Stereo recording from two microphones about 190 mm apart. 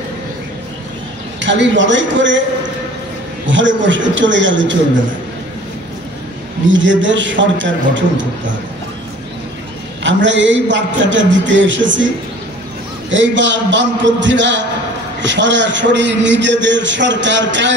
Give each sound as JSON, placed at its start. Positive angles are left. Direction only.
{"t": 1.4, "sound": "a man's voice", "side_deg": -70}
{"t": 3.4, "sound": "a man's voice", "side_deg": -75}
{"t": 6.7, "sound": "a man's voice", "side_deg": -75}
{"t": 10.0, "sound": "a man's voice", "side_deg": -70}
{"t": 13.1, "sound": "a man's voice", "side_deg": -75}